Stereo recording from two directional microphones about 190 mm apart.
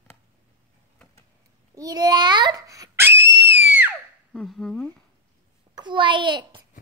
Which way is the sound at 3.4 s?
65° right (ahead or behind).